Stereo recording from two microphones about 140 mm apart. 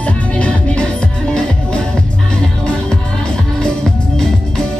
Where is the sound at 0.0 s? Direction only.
10° left (ahead or behind).